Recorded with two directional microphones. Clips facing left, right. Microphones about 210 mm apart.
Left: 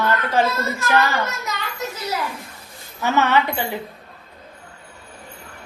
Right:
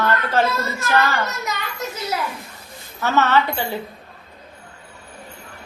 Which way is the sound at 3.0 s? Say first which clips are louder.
Even; 15° left (ahead or behind).